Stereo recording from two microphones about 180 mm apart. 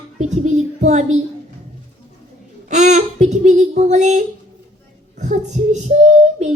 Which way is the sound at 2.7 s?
40° right (ahead or behind).